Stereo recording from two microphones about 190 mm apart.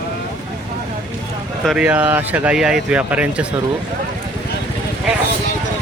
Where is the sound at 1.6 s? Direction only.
5° right (ahead or behind).